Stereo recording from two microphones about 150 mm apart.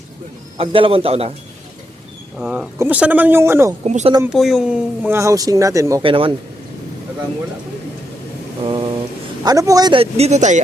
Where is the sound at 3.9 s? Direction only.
50° right (ahead or behind).